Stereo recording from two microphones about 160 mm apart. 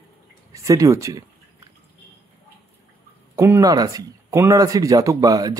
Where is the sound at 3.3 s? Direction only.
15° right (ahead or behind).